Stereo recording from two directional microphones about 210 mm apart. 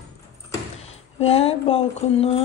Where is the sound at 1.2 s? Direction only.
30° left (ahead or behind).